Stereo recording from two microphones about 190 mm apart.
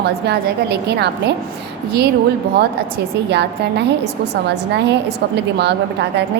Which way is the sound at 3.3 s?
60° right (ahead or behind).